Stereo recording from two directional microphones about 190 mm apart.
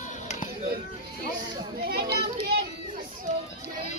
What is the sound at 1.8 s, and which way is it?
Speech, 55° right (ahead or behind).